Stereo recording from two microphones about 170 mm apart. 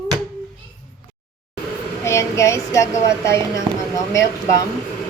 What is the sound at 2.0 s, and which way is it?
A woman's voice, 15° left (ahead or behind).